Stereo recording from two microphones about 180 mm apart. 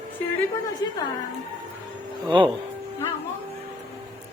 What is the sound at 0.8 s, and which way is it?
Speech, 20° left (ahead or behind).